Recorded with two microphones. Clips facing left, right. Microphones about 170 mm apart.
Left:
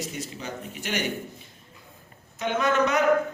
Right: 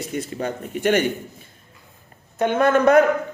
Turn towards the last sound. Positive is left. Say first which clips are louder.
# right 8 dB
turn(degrees=-50)  # may be behind; listen again after turning